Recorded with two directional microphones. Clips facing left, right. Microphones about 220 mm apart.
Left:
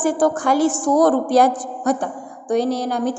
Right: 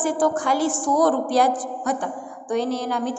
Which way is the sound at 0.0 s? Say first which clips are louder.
Left 3 dB; 45° left (ahead or behind).